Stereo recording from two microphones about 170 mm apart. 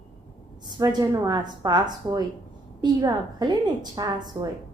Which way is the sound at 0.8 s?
20° right (ahead or behind).